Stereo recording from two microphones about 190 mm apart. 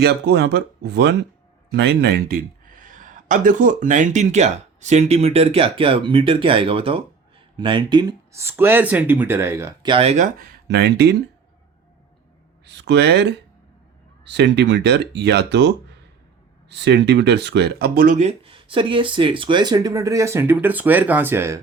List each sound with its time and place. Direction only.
0.0 s speech: 60° right (ahead or behind); by 9.9 s 15° right (ahead or behind)
9.9 s speech: 30° right (ahead or behind); by 11.2 s 60° right (ahead or behind)
12.6 s speech: 70° right (ahead or behind); by 21.6 s 15° right (ahead or behind)